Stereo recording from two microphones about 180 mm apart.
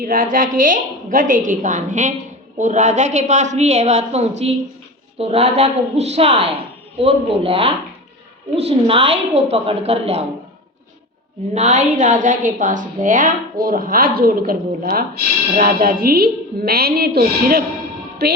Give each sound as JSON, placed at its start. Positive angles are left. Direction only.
{"t": 0.0, "sound": "a woman's voice", "side_deg": -50}
{"t": 11.5, "sound": "a woman's voice", "side_deg": -40}